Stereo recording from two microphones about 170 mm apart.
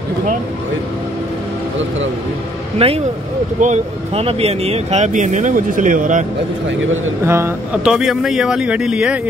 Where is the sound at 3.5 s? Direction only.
45° right (ahead or behind).